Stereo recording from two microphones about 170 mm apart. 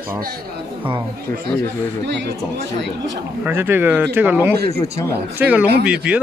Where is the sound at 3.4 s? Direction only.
10° right (ahead or behind).